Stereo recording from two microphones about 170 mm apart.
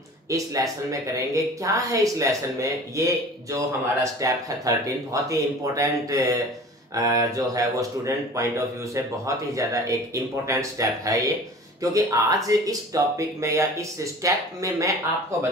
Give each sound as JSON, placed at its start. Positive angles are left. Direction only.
{"t": 0.3, "sound": "a man's voice", "side_deg": -20}